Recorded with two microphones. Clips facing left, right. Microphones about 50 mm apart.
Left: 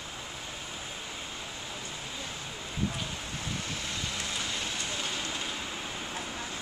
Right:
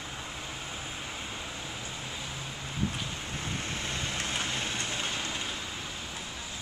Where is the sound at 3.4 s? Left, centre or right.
Right.